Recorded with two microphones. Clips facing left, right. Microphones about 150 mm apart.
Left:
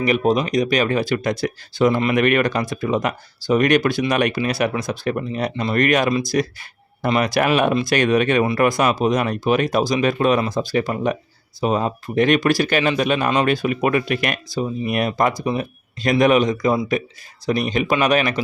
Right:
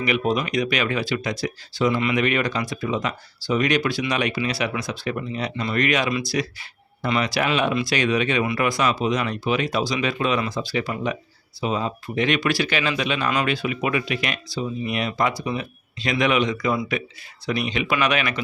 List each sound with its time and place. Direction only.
0.0 s speech: 40° left (ahead or behind)